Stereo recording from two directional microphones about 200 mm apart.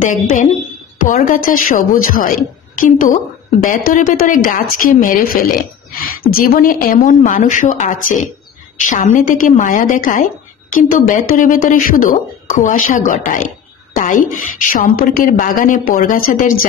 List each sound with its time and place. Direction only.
0.0 s a woman's voice: 40° left (ahead or behind)